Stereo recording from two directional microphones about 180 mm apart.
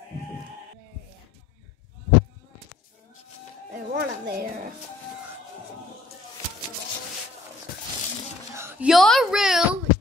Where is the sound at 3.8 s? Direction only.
60° right (ahead or behind).